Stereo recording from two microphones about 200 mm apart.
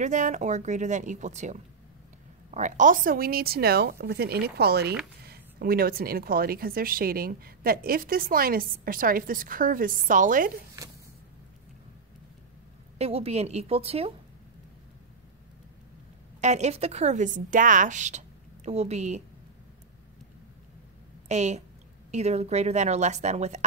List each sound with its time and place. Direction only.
0.0 s a woman's voice: 40° right (ahead or behind)
12.9 s a woman's voice: 30° right (ahead or behind)
16.3 s a woman's voice: 35° right (ahead or behind)
21.3 s a woman's voice: 35° right (ahead or behind)